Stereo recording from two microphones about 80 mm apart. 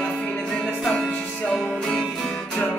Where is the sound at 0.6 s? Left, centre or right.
Centre.